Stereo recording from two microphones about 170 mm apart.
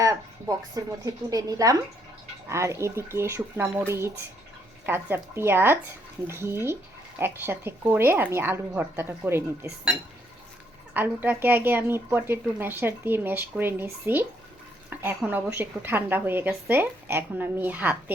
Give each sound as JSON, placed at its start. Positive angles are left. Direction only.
{"t": 0.0, "sound": "a sound", "side_deg": -20}
{"t": 1.0, "sound": "speech", "side_deg": -20}
{"t": 10.9, "sound": "speech", "side_deg": -10}